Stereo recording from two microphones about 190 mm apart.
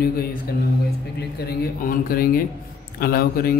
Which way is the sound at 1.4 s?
50° left (ahead or behind).